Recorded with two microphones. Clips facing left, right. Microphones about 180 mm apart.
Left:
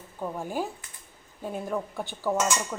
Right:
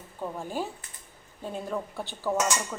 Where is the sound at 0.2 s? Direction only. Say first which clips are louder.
Left 2 dB; 15° left (ahead or behind).